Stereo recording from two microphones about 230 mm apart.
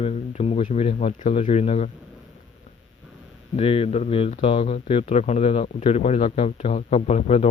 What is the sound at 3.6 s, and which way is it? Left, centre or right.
Speech, left.